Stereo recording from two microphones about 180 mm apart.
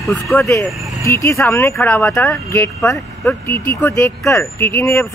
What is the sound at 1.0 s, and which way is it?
Speech, 15° left (ahead or behind).